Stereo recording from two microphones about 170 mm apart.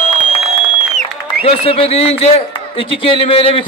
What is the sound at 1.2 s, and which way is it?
A man's voice, 35° left (ahead or behind).